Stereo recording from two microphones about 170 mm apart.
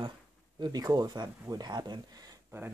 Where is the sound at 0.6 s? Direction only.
25° right (ahead or behind).